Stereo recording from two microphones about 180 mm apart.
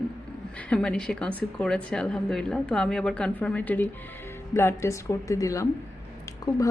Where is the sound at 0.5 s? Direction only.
5° left (ahead or behind).